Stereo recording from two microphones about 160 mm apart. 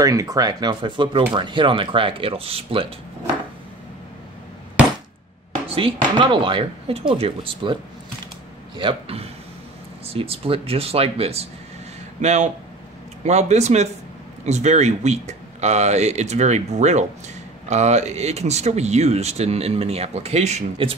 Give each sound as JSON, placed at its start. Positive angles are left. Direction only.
{"t": 0.0, "sound": "speech", "side_deg": -20}
{"t": 5.8, "sound": "speech", "side_deg": -30}